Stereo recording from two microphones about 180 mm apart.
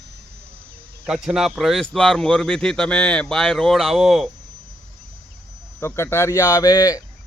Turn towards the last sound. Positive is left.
turn(degrees=20)  # may be behind; listen again after turning